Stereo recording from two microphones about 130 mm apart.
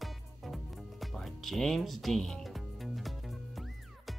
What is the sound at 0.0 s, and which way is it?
Music, centre (ahead or behind).